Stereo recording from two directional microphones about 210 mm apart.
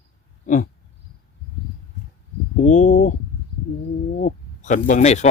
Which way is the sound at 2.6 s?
35° left (ahead or behind).